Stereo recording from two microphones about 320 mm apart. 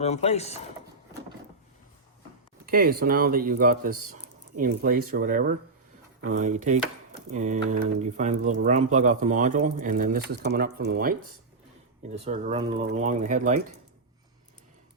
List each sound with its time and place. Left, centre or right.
0.0 s speech: centre
2.6 s speech: right
4.1 s a sound: right
5.1 s speech: right